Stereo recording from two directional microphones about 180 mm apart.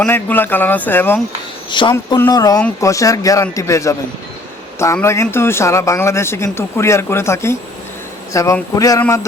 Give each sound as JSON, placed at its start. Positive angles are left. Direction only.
{"t": 0.0, "sound": "a man's voice", "side_deg": 10}
{"t": 1.7, "sound": "a man's voice", "side_deg": 25}
{"t": 4.9, "sound": "a man's voice", "side_deg": 15}